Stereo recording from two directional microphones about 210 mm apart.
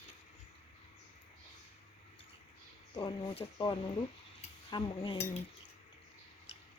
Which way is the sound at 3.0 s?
20° left (ahead or behind).